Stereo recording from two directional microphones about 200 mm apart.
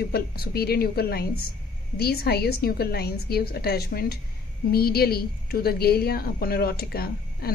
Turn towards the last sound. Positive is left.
turn(degrees=50)  # may be behind; listen again after turning